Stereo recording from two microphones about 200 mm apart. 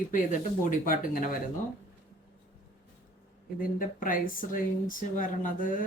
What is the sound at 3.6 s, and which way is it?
Speech, 45° left (ahead or behind).